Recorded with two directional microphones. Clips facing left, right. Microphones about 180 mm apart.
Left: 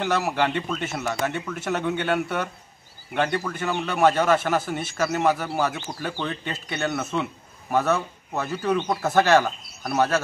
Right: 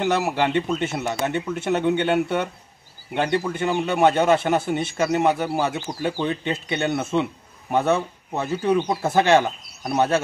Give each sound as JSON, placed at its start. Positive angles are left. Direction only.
{"t": 0.3, "sound": "a man's voice", "side_deg": -15}